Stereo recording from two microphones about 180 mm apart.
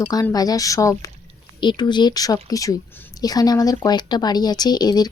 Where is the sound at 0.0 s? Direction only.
15° left (ahead or behind).